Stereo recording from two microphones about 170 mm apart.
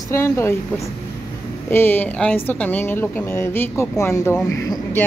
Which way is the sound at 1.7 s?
10° left (ahead or behind).